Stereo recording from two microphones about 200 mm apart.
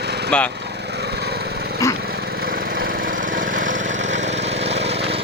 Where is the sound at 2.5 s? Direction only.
45° right (ahead or behind).